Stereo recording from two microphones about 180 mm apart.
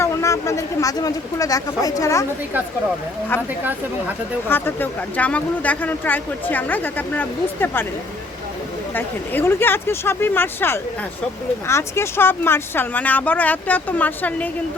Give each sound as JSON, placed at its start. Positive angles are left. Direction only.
{"t": 0.0, "sound": "speech", "side_deg": 15}
{"t": 4.4, "sound": "speech", "side_deg": 10}
{"t": 9.0, "sound": "speech", "side_deg": 15}